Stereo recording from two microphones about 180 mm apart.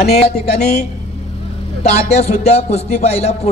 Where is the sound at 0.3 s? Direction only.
40° left (ahead or behind).